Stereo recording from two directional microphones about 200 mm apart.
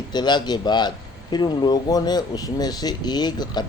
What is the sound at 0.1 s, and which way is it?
Speech, 20° left (ahead or behind).